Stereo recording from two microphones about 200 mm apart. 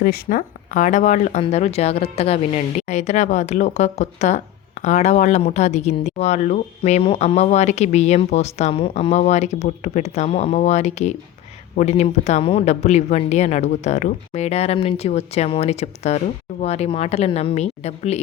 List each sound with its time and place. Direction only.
0.0 s speech: 45° left (ahead or behind)